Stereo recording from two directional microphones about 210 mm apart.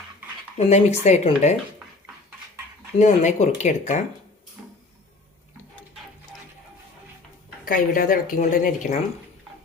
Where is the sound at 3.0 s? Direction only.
35° left (ahead or behind).